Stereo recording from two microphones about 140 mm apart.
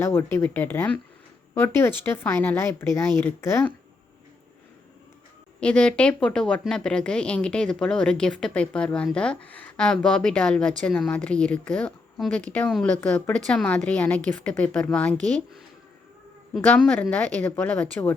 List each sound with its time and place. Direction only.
0.0 s speech: 15° left (ahead or behind)
5.5 s speech: 5° left (ahead or behind)